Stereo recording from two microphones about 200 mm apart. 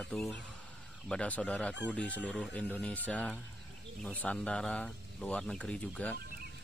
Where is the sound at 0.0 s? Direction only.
Centre (ahead or behind).